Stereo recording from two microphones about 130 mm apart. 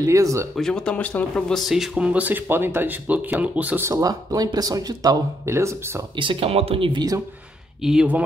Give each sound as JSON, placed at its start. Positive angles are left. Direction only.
{"t": 0.0, "sound": "speech", "side_deg": -25}
{"t": 0.6, "sound": "speech", "side_deg": 5}
{"t": 3.9, "sound": "speech", "side_deg": -25}
{"t": 6.1, "sound": "speech", "side_deg": -45}
{"t": 7.8, "sound": "speech", "side_deg": -5}